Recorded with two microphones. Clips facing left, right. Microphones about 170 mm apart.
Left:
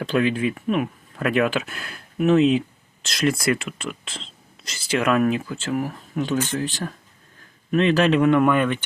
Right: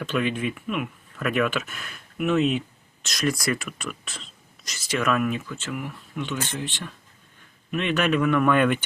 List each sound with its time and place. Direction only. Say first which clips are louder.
0.0 s speech: left 4 dB; 35° left (ahead or behind)
8.5 s speech: right 1 dB; centre (ahead or behind)